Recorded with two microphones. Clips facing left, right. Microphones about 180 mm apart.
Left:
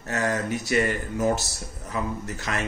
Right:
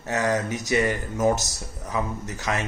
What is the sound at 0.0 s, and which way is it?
A man's voice, 20° right (ahead or behind).